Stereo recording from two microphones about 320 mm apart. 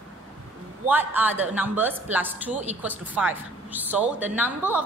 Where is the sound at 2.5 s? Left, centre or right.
Right.